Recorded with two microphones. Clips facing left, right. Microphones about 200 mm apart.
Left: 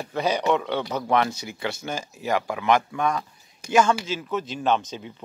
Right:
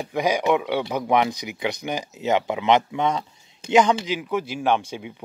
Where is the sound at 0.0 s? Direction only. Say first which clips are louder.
Right 2 dB; 15° right (ahead or behind).